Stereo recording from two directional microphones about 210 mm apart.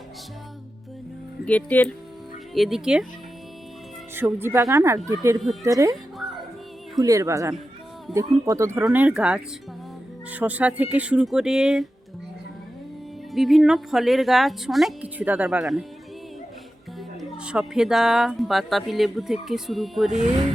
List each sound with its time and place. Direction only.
1.5 s speech: 5° left (ahead or behind)
4.1 s speech: 10° right (ahead or behind)
7.0 s speech: 15° right (ahead or behind)
13.3 s speech: centre (ahead or behind)
17.2 s speech: 5° right (ahead or behind)